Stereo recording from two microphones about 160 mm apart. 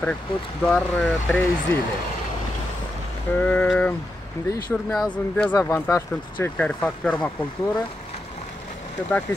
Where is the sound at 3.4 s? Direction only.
5° left (ahead or behind).